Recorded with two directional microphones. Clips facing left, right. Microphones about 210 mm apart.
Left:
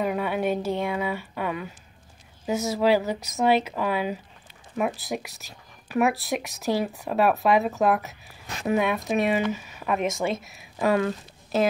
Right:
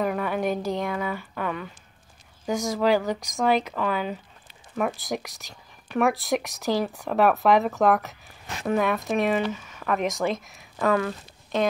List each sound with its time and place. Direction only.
0.0 s speech: 15° left (ahead or behind)
10.8 s speech: 20° left (ahead or behind)